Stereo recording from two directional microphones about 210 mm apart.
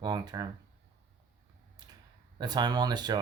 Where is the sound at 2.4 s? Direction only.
20° right (ahead or behind).